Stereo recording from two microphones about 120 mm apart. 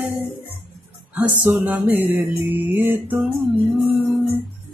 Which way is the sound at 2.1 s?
15° right (ahead or behind).